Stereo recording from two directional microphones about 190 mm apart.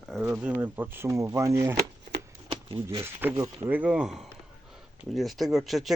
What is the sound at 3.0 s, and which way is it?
Speech, 10° right (ahead or behind).